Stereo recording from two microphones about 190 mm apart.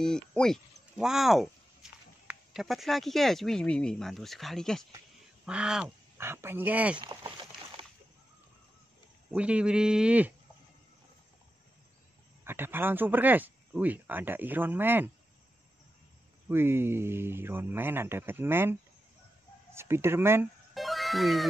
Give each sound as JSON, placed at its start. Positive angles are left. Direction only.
{"t": 0.0, "sound": "speech", "side_deg": 5}
{"t": 7.0, "sound": "a sound", "side_deg": -25}
{"t": 9.3, "sound": "a man's voice", "side_deg": -5}
{"t": 12.4, "sound": "speech", "side_deg": -10}
{"t": 16.4, "sound": "speech", "side_deg": -10}
{"t": 20.7, "sound": "music", "side_deg": 0}